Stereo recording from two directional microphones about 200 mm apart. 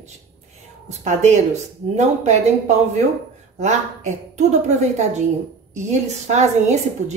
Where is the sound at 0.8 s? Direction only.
35° right (ahead or behind).